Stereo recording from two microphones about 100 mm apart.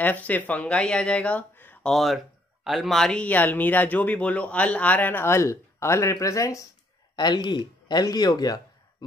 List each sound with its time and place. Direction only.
0.0 s speech: 15° left (ahead or behind)
1.9 s speech: centre (ahead or behind); by 6.6 s 35° left (ahead or behind)
7.2 s speech: 45° left (ahead or behind)